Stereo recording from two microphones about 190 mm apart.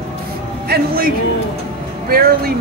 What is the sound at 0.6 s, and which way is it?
A man's voice, 55° right (ahead or behind).